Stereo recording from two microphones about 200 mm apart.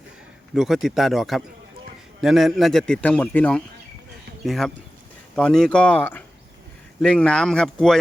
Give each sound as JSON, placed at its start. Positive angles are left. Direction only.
{"t": 0.5, "sound": "a man's voice", "side_deg": 0}